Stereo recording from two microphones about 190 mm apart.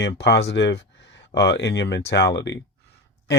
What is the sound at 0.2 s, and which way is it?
Speech, 65° left (ahead or behind).